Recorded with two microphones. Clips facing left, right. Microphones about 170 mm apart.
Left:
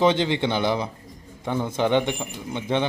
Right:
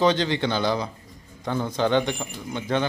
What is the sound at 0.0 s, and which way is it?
Speech, 25° left (ahead or behind).